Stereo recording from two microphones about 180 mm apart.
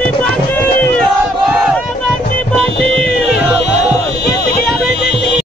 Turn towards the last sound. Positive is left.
turn(degrees=-5)  # may be behind; listen again after turning